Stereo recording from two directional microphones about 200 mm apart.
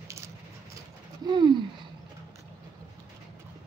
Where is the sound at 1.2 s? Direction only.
20° right (ahead or behind).